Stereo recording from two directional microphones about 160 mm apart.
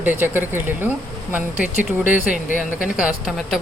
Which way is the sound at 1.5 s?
55° left (ahead or behind).